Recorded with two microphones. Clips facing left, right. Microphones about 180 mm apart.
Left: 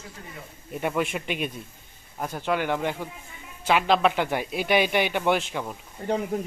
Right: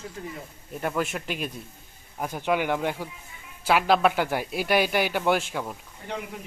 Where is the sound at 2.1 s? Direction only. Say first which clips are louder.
Right 1 dB; 10° right (ahead or behind).